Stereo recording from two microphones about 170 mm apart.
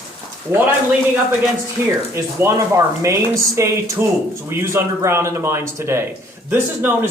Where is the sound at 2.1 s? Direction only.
15° right (ahead or behind).